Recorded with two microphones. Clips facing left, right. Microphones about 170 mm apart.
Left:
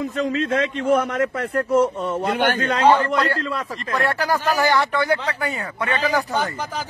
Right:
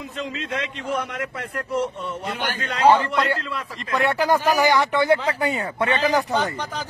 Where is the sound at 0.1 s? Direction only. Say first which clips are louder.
Left 8 dB; 45° left (ahead or behind).